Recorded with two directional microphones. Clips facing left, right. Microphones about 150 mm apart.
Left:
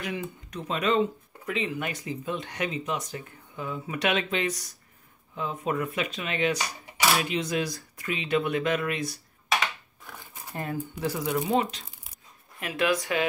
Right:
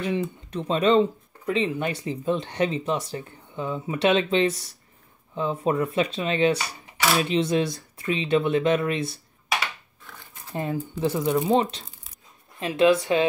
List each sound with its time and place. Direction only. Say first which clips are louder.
0.0 s speech: right 7 dB; 25° right (ahead or behind)
10.5 s speech: right 4 dB; 20° right (ahead or behind)